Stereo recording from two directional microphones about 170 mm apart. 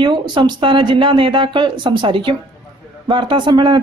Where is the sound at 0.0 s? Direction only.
25° right (ahead or behind).